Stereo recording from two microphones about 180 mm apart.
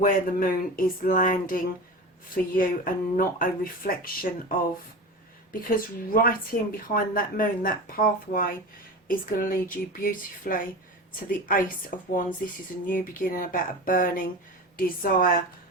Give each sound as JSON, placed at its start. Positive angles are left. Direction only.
{"t": 0.0, "sound": "speech", "side_deg": 55}